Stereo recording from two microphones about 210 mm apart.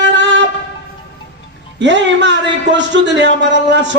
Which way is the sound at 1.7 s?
55° right (ahead or behind).